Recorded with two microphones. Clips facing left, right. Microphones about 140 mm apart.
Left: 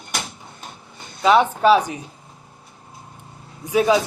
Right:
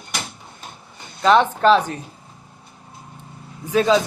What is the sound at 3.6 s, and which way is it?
Speech, 10° left (ahead or behind).